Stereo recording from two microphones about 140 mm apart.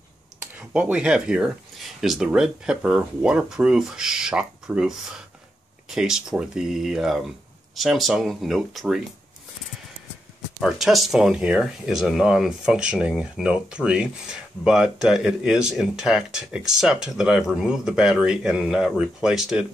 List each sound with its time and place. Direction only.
0.6 s speech: 10° right (ahead or behind)
10.6 s speech: centre (ahead or behind)